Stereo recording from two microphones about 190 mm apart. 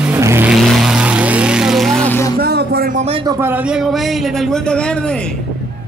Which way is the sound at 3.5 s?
5° right (ahead or behind).